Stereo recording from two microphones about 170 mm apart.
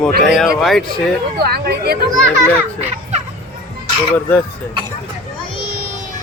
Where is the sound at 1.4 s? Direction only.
70° right (ahead or behind).